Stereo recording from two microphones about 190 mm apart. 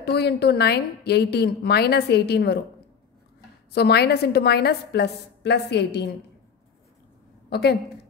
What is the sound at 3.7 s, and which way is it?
A woman's voice, 60° left (ahead or behind).